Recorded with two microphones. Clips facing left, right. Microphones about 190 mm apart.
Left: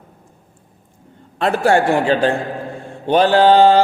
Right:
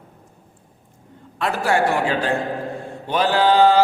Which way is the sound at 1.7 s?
30° left (ahead or behind).